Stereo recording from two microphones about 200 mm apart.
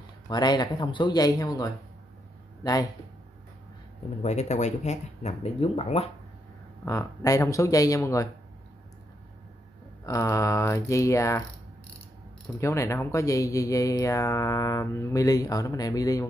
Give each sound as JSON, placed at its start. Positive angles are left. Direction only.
{"t": 0.3, "sound": "speech", "side_deg": 20}
{"t": 4.2, "sound": "speech", "side_deg": 35}
{"t": 6.8, "sound": "speech", "side_deg": 15}
{"t": 10.0, "sound": "speech", "side_deg": 15}
{"t": 12.5, "sound": "speech", "side_deg": 15}